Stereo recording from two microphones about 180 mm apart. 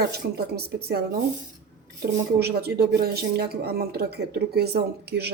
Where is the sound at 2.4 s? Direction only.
60° right (ahead or behind).